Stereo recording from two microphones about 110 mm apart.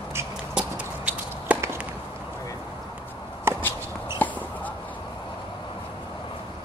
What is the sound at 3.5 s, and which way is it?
Walk, 25° right (ahead or behind).